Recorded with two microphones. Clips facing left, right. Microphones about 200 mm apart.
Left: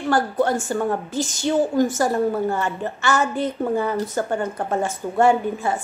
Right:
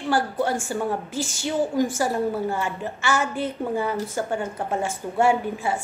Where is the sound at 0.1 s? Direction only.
10° right (ahead or behind).